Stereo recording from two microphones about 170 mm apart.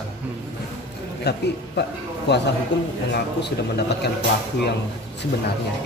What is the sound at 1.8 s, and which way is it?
A man's voice, 85° left.